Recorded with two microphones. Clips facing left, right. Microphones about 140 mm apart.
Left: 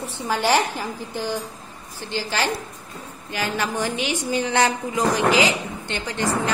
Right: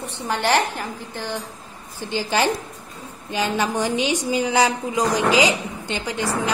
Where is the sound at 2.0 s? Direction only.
15° right (ahead or behind).